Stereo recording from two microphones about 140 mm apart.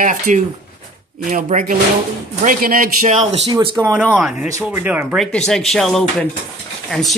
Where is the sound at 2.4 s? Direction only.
90° right; by 3.4 s 60° right (ahead or behind).